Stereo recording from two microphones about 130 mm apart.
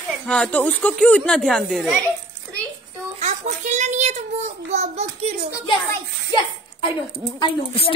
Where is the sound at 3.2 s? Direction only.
65° right (ahead or behind).